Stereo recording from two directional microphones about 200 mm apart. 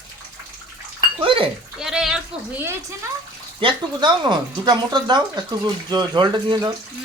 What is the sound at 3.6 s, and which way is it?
Speech, 20° right (ahead or behind).